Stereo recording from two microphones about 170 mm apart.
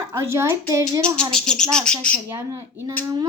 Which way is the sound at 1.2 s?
5° left (ahead or behind).